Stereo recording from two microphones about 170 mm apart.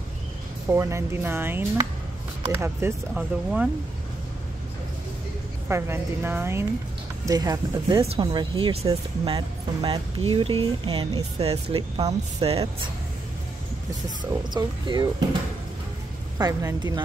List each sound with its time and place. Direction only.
0.7 s speech: 15° right (ahead or behind)
5.7 s speech: 15° right (ahead or behind); by 11.5 s 35° right (ahead or behind)
11.5 s speech: 25° right (ahead or behind)
12.1 s speech: 35° right (ahead or behind)
14.5 s speech: 25° right (ahead or behind)
16.3 s speech: 20° right (ahead or behind)